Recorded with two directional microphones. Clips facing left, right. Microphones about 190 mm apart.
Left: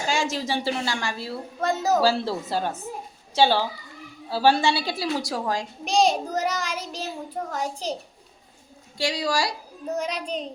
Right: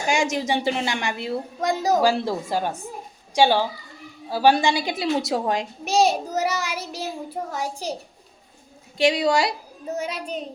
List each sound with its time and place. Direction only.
0.1 s a woman's voice: 15° right (ahead or behind)
5.8 s a woman's voice: 5° right (ahead or behind)
9.0 s a woman's voice: 20° right (ahead or behind)
9.8 s a child's voice: 5° right (ahead or behind)